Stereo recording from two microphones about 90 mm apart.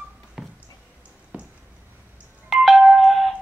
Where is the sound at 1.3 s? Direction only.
15° right (ahead or behind).